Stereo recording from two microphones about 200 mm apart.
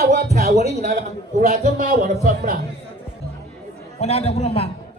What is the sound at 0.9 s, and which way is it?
A man's voice, 35° right (ahead or behind).